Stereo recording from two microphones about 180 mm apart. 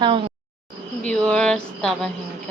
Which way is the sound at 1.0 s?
5° left (ahead or behind).